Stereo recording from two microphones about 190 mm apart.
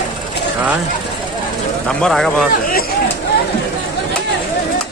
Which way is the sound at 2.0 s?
Centre (ahead or behind).